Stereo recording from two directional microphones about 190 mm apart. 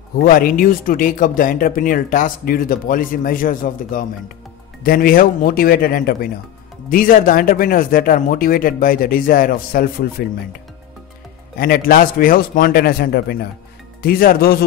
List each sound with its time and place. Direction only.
0.2 s speech: 50° left (ahead or behind)
11.6 s speech: 50° left (ahead or behind)